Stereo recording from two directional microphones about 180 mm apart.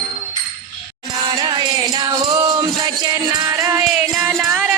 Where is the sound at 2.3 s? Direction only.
20° right (ahead or behind).